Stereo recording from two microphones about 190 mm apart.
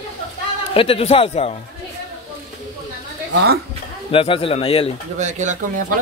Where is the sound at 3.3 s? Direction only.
60° right (ahead or behind).